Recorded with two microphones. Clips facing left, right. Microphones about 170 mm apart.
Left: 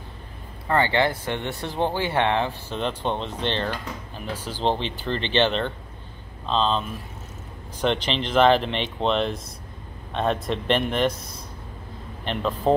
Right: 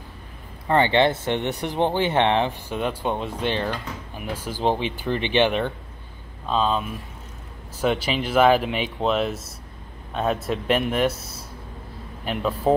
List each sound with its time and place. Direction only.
0.7 s speech: 20° right (ahead or behind)